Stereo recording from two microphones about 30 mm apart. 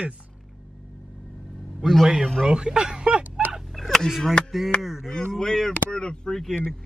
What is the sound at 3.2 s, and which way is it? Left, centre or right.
Fowl, right.